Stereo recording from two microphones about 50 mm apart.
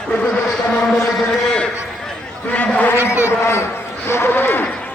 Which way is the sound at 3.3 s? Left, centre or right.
Left.